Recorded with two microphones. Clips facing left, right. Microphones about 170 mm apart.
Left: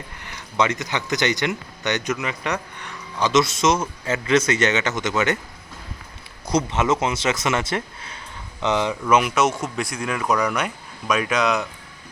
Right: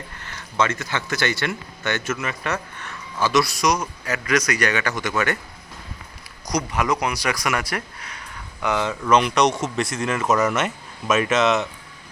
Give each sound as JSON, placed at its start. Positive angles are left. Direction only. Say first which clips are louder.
{"t": 0.2, "sound": "speech", "louder": "left 1 dB", "side_deg": 15}
{"t": 6.5, "sound": "speech", "louder": "left 2 dB", "side_deg": 25}